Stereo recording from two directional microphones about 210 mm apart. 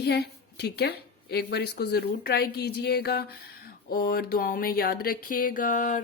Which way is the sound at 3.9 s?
45° left (ahead or behind).